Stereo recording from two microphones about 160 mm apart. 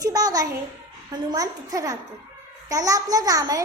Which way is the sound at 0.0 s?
20° right (ahead or behind).